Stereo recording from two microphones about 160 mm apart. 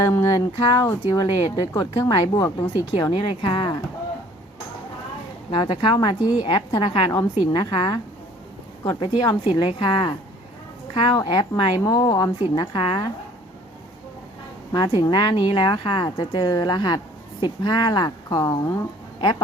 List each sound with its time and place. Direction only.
0.0 s a sound: 20° left (ahead or behind)
0.7 s a woman's voice: 20° left (ahead or behind)
2.9 s speech: 35° left (ahead or behind)
5.5 s a woman's voice: 30° left (ahead or behind)
14.7 s a woman's voice: 25° left (ahead or behind)